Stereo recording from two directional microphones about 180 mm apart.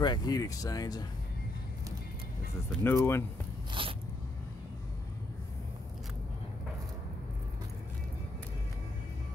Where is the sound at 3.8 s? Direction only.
30° right (ahead or behind).